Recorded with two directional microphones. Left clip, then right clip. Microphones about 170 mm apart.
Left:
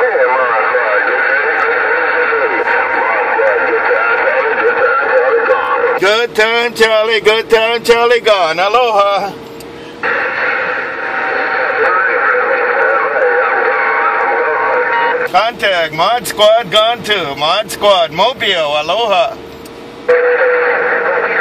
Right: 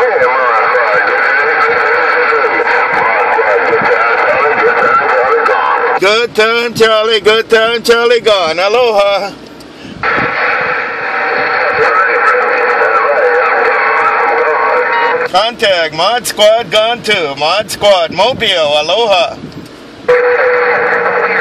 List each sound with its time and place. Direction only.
0.0 s horse: 45° right (ahead or behind)
5.9 s speech: 20° right (ahead or behind)
10.0 s a sound: 50° right (ahead or behind)
17.4 s speech: 45° right (ahead or behind)
20.1 s radio: 50° right (ahead or behind)